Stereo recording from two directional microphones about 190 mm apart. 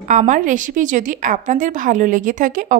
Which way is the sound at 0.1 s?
40° right (ahead or behind).